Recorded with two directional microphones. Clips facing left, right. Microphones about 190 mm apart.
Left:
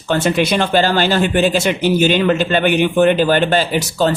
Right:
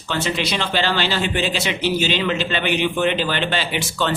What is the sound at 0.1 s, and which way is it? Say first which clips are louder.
Speech: left 8 dB; 50° left (ahead or behind).